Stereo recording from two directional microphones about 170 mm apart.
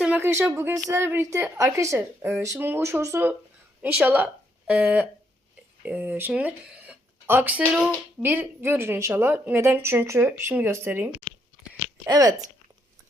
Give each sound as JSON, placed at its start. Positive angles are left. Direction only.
{"t": 0.0, "sound": "a woman's voice", "side_deg": -10}